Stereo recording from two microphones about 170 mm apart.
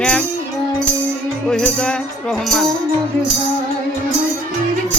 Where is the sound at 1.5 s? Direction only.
5° left (ahead or behind).